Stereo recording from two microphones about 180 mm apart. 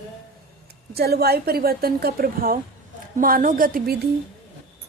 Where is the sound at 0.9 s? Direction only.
60° right (ahead or behind).